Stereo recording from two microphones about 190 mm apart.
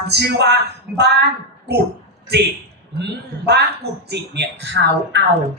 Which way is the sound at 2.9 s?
60° right (ahead or behind).